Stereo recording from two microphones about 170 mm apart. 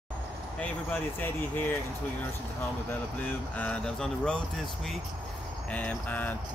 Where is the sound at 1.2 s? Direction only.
10° left (ahead or behind).